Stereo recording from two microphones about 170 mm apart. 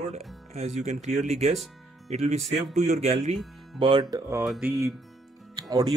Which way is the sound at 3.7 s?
30° right (ahead or behind).